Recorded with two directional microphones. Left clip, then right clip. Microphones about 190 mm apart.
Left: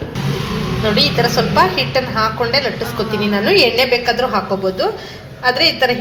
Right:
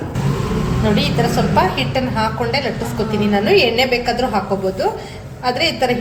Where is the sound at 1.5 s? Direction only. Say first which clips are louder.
Left 3 dB; 10° left (ahead or behind).